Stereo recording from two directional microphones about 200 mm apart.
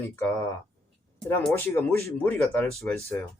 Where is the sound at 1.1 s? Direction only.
10° left (ahead or behind).